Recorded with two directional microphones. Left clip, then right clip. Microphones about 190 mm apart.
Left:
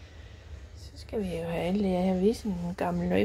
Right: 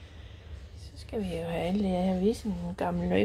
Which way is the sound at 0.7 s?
15° left (ahead or behind).